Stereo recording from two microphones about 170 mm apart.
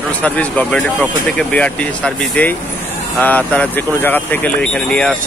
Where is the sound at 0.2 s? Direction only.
10° left (ahead or behind).